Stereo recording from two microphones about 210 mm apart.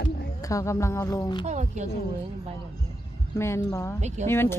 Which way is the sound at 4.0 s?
35° right (ahead or behind).